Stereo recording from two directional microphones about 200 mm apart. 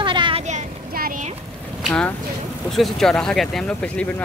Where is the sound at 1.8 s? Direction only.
5° left (ahead or behind).